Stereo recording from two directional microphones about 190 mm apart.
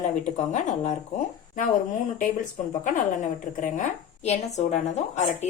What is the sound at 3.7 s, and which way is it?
A woman's voice, 35° left (ahead or behind).